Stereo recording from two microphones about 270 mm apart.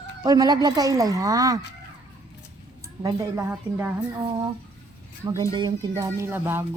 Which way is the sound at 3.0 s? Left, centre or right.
Centre.